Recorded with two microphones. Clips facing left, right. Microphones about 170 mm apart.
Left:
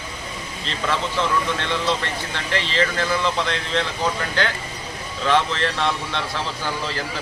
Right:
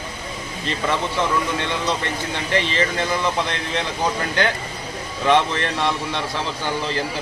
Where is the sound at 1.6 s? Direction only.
15° right (ahead or behind).